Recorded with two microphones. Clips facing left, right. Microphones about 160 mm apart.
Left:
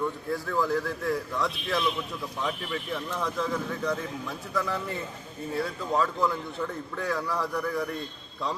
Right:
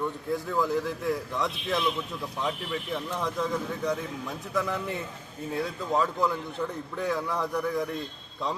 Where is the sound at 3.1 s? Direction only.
20° right (ahead or behind).